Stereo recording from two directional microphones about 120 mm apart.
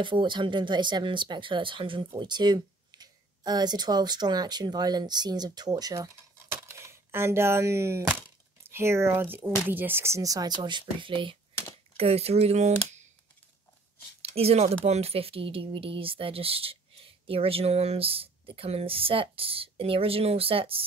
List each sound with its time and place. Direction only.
0.0 s speech: 40° right (ahead or behind)
6.5 s speech: 20° right (ahead or behind); by 11.3 s 45° right (ahead or behind)
12.0 s speech: 60° right (ahead or behind)
14.3 s speech: 60° right (ahead or behind)